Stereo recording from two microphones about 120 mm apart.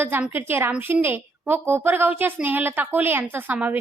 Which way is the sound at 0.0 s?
20° right (ahead or behind).